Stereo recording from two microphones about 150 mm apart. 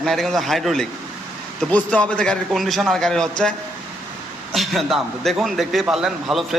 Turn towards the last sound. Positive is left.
turn(degrees=0)  # may be behind; listen again after turning